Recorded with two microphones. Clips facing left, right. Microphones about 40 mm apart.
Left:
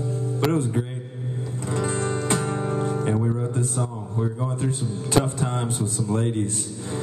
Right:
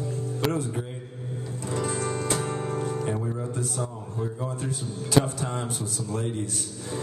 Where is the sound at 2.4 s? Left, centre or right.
Left.